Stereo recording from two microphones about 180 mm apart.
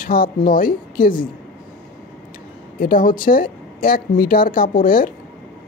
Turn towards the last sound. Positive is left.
turn(degrees=50)  # may be behind; listen again after turning